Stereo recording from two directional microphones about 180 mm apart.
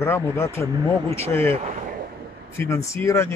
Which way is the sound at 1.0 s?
35° right (ahead or behind).